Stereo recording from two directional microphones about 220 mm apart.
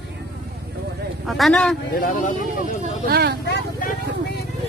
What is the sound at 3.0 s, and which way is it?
Speech, 45° right (ahead or behind).